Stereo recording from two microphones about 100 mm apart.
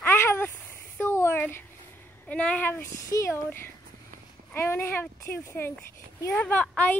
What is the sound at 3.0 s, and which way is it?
Speech, 35° left (ahead or behind).